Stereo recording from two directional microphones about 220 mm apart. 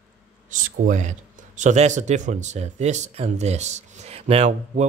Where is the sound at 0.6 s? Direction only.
35° right (ahead or behind).